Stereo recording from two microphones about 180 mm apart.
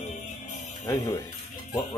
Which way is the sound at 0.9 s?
15° left (ahead or behind).